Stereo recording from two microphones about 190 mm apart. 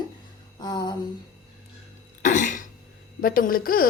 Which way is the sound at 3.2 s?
50° left (ahead or behind).